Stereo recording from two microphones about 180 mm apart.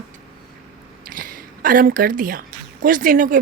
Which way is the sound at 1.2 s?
50° right (ahead or behind).